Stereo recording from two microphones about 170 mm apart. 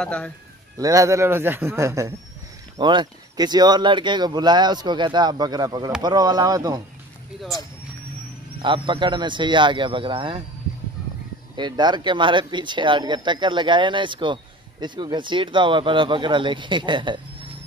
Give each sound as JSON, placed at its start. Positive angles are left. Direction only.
{"t": 0.0, "sound": "a man's voice", "side_deg": 5}
{"t": 0.7, "sound": "a man's voice", "side_deg": -20}
{"t": 8.6, "sound": "speech", "side_deg": -30}
{"t": 11.5, "sound": "speech", "side_deg": -25}